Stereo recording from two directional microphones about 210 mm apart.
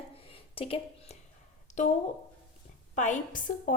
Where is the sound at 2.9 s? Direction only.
35° left (ahead or behind).